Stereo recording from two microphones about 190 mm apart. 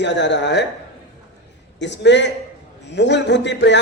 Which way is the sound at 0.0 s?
65° left (ahead or behind).